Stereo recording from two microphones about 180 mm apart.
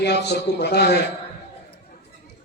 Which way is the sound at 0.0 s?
70° left (ahead or behind).